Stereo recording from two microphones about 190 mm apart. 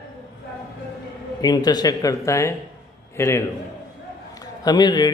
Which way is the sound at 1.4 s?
20° left (ahead or behind).